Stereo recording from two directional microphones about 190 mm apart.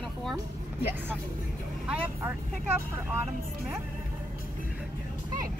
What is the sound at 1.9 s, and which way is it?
Speech, 10° right (ahead or behind).